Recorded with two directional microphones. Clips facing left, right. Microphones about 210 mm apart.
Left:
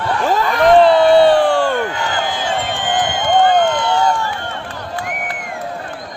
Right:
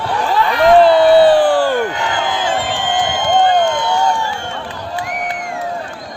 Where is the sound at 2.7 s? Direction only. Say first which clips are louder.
Right 1 dB; 55° left (ahead or behind).